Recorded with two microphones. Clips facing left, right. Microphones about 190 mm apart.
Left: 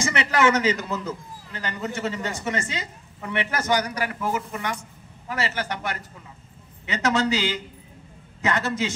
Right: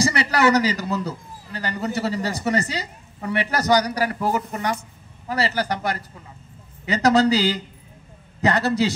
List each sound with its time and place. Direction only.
0.0 s a man's voice: 35° right (ahead or behind)